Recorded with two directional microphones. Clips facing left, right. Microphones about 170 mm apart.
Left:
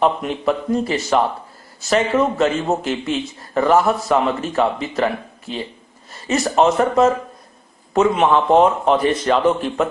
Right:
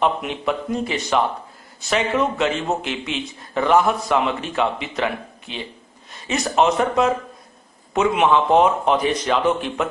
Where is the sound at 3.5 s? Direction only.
Centre (ahead or behind).